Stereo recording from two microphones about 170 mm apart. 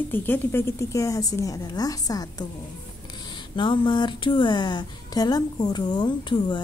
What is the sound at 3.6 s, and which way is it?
Speech, 25° left (ahead or behind).